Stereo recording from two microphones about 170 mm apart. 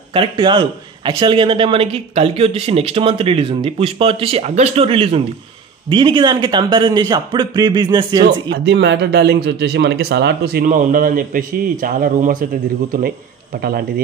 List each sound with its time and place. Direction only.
0.1 s a man's voice: 30° right (ahead or behind)
8.5 s speech: 90° right; by 14.0 s 60° right (ahead or behind)